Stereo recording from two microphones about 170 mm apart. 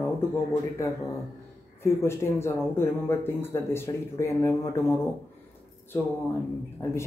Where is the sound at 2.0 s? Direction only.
15° left (ahead or behind).